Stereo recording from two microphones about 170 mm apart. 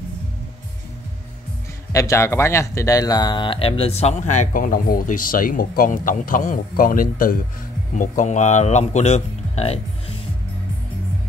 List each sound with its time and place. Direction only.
1.9 s speech: 20° left (ahead or behind); by 10.1 s 35° left (ahead or behind)